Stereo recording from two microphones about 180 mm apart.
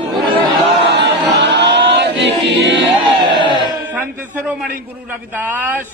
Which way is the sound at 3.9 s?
10° right (ahead or behind).